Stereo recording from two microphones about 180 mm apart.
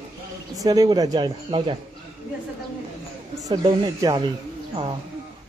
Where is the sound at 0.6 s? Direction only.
20° right (ahead or behind).